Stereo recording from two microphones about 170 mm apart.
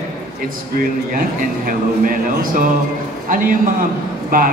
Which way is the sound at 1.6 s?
55° right (ahead or behind).